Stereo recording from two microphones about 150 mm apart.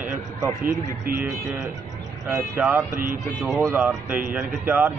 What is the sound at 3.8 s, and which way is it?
A man's voice, 5° right (ahead or behind).